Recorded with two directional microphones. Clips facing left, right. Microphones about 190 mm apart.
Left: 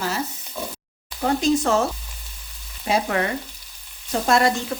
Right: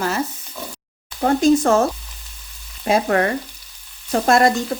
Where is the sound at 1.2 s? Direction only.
50° right (ahead or behind).